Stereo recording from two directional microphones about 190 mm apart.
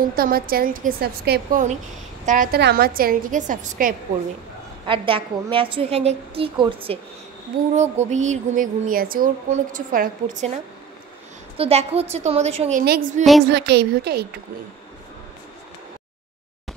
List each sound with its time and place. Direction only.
0.1 s a woman's voice: 50° right (ahead or behind)
2.2 s a woman's voice: 45° right (ahead or behind)
4.8 s a woman's voice: 25° right (ahead or behind)
13.5 s a woman's voice: 60° right (ahead or behind)